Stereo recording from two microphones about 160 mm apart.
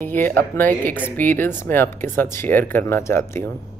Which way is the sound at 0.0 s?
10° left (ahead or behind).